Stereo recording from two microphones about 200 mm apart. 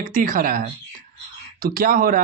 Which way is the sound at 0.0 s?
45° right (ahead or behind).